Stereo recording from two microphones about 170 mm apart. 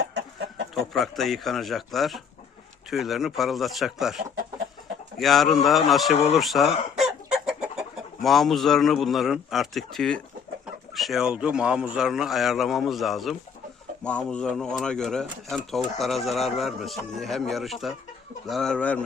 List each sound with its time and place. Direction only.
0.0 s chicken: 80° right
0.7 s a man's voice: centre (ahead or behind)